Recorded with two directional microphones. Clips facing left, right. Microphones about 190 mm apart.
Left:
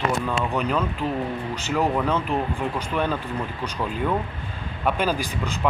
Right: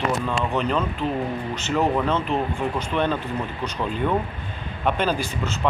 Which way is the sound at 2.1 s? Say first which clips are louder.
Right 1 dB; 10° left (ahead or behind).